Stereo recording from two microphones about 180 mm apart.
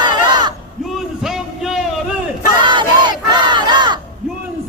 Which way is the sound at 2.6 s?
25° right (ahead or behind).